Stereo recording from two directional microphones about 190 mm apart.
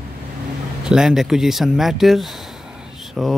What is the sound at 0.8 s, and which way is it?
Speech, 5° right (ahead or behind).